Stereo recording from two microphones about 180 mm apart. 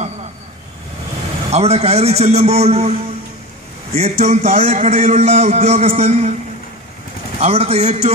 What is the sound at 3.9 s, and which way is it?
A man's voice, 35° right (ahead or behind).